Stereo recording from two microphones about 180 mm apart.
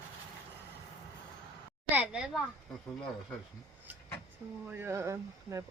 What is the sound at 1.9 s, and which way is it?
Speech, 5° right (ahead or behind).